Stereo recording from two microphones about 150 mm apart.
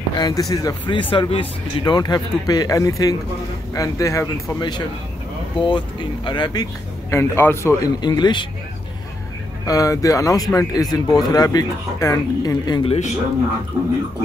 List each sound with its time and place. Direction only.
0.1 s speech: 25° left (ahead or behind)
8.0 s speech: 30° left (ahead or behind)
9.7 s speech: 20° left (ahead or behind)
12.8 s a man's voice: 45° left (ahead or behind)